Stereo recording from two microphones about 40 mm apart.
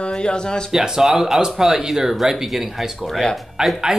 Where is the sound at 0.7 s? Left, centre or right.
Centre.